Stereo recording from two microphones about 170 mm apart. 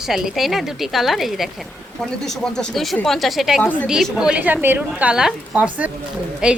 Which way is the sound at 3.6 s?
10° left (ahead or behind).